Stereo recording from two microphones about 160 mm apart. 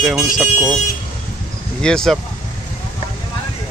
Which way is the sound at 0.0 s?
Centre (ahead or behind).